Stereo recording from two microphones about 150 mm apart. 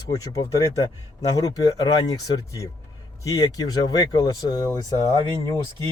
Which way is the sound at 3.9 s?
25° left (ahead or behind).